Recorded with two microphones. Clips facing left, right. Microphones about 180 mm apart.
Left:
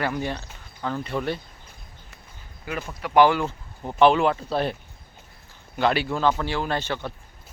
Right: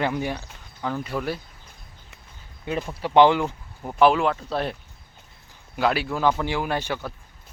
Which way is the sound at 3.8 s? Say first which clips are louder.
Left 1 dB; centre (ahead or behind).